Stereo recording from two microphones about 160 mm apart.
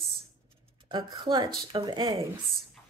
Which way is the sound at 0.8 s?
30° right (ahead or behind).